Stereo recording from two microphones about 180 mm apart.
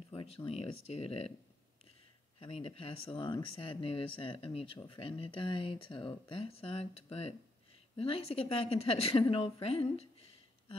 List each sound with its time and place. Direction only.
0.1 s speech: 30° left (ahead or behind)
2.4 s speech: 30° left (ahead or behind)